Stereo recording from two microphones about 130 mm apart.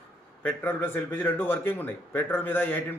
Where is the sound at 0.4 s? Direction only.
15° left (ahead or behind).